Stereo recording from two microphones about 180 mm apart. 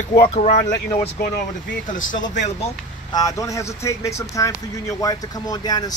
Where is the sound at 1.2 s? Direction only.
55° left (ahead or behind).